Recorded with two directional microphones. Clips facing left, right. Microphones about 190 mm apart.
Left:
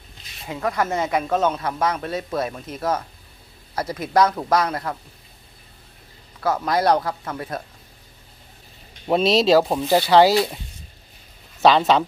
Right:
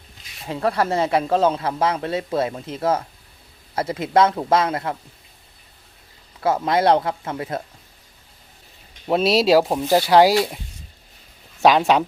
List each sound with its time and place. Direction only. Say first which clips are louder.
0.6 s speech: right 3 dB; 30° right (ahead or behind)
6.4 s speech: right 2 dB; 25° right (ahead or behind)
9.0 s speech: even; 5° right (ahead or behind)
11.6 s speech: even; 10° right (ahead or behind)